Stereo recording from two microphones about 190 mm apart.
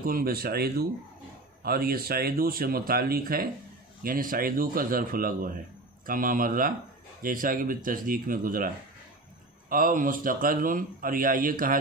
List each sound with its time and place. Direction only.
0.0 s a man's voice: 50° right (ahead or behind)